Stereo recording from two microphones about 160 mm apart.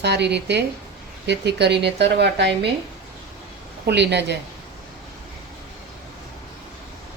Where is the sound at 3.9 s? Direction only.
90° right.